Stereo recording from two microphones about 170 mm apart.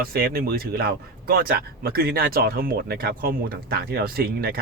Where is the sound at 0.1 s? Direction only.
65° right (ahead or behind).